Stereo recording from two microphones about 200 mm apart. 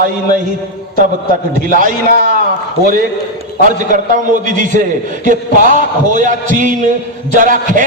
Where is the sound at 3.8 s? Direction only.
40° right (ahead or behind).